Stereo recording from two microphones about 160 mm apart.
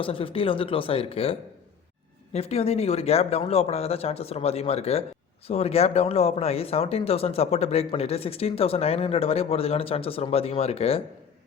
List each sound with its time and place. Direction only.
0.0 s speech: 35° left (ahead or behind)